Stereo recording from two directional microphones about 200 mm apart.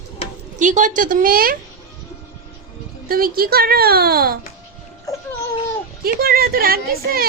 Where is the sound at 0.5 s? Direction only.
40° right (ahead or behind).